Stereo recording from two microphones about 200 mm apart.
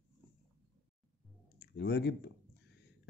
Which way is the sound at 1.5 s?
55° left (ahead or behind).